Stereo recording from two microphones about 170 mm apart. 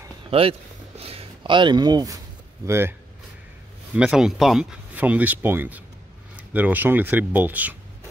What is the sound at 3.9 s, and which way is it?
Speech, 5° right (ahead or behind).